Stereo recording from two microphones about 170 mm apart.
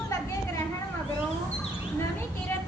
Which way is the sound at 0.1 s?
20° left (ahead or behind).